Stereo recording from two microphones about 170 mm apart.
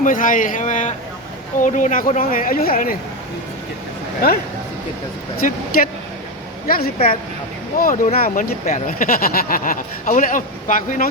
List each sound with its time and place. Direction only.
0.0 s speech: 50° left (ahead or behind)
5.4 s speech: 50° left (ahead or behind)
6.7 s a woman's voice: 60° left (ahead or behind)